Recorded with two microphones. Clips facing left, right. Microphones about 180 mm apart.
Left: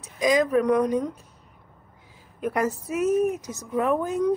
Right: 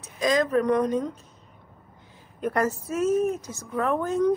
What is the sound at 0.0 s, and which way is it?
Speech, 10° left (ahead or behind).